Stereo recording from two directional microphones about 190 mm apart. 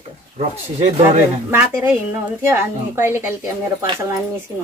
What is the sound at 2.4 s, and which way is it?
Speech, 10° right (ahead or behind).